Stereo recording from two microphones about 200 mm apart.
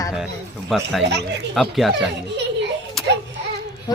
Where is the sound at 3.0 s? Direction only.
Centre (ahead or behind).